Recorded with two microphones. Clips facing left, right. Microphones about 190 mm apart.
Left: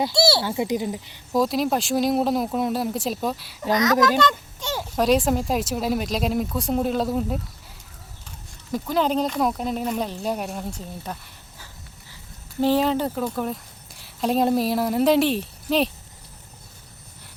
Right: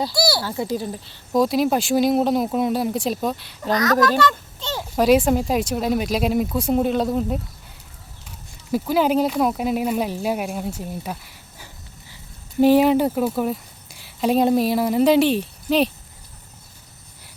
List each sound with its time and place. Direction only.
0.0 s a child's voice: 25° left (ahead or behind)
1.3 s speech: centre (ahead or behind)
3.7 s a child's voice: 20° left (ahead or behind)
4.8 s speech: 5° right (ahead or behind)
8.7 s speech: 5° right (ahead or behind)
12.5 s speech: 15° right (ahead or behind)